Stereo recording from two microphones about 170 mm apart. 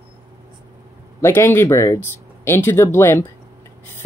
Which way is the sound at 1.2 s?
15° left (ahead or behind).